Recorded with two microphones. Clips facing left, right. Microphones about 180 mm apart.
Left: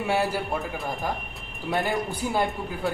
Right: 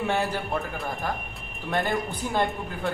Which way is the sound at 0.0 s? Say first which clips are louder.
Left 1 dB; 10° left (ahead or behind).